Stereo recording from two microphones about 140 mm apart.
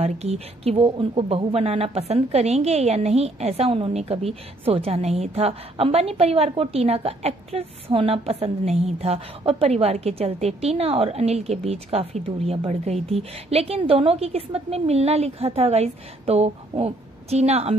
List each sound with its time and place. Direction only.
0.0 s speech: 50° right (ahead or behind)